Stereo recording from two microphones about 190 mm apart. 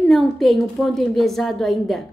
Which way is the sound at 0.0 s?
Centre (ahead or behind).